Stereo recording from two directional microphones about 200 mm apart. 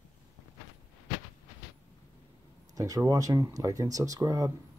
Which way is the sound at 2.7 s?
15° right (ahead or behind).